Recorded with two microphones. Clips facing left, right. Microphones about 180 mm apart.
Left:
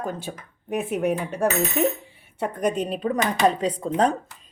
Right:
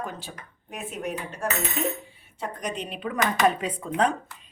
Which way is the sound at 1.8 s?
65° left (ahead or behind).